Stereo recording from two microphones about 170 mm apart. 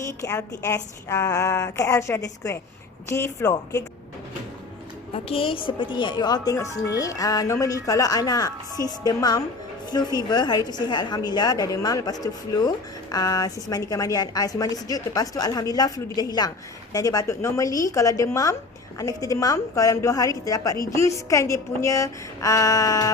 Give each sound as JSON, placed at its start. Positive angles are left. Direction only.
{"t": 0.1, "sound": "a woman's voice", "side_deg": 20}
{"t": 5.1, "sound": "a woman's voice", "side_deg": 35}